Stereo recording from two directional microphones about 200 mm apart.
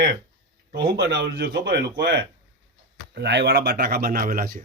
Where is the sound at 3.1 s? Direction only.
60° right (ahead or behind).